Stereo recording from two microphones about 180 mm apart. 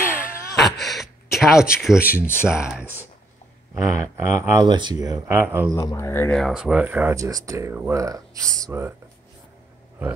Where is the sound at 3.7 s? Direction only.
20° right (ahead or behind).